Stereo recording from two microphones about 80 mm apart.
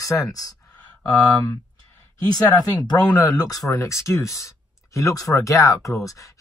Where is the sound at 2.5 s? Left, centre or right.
Left.